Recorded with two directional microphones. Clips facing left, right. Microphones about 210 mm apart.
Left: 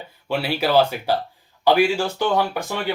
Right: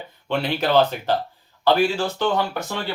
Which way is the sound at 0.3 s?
10° left (ahead or behind).